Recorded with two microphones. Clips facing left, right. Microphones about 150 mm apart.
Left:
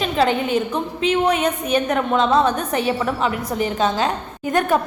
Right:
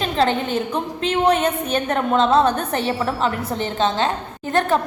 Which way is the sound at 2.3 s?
30° right (ahead or behind).